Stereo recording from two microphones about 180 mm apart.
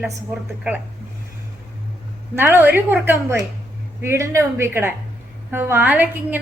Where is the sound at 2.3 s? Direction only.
15° right (ahead or behind).